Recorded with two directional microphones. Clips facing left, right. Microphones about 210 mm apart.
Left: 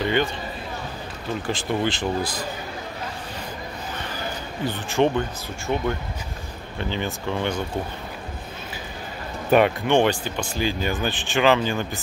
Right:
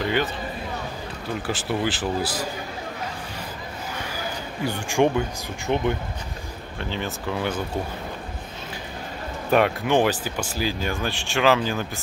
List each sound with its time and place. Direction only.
0.0 s speech: 5° right (ahead or behind)
1.4 s speech: 5° right (ahead or behind)
4.0 s a sound: 10° right (ahead or behind)
5.7 s speech: 15° right (ahead or behind)
6.8 s speech: centre (ahead or behind)
9.5 s speech: centre (ahead or behind)